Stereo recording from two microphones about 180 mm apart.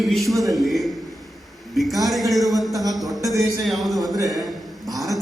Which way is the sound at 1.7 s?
Centre (ahead or behind).